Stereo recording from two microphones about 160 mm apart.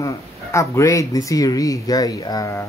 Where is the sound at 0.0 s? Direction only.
20° left (ahead or behind).